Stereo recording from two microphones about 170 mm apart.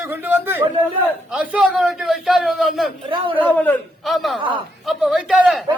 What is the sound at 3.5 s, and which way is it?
A man's voice, 10° left (ahead or behind).